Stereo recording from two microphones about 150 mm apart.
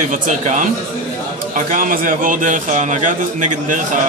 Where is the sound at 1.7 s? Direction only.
65° right (ahead or behind).